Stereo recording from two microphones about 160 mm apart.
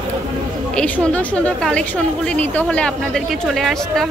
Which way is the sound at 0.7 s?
5° left (ahead or behind).